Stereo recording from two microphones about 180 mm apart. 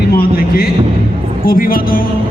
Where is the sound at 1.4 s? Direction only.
55° left (ahead or behind).